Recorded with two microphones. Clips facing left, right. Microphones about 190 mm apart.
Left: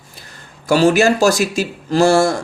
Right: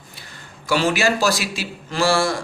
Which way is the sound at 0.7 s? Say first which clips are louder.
Left 7 dB; 40° left (ahead or behind).